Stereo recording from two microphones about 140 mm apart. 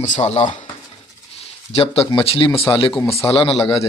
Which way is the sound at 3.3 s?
40° left (ahead or behind).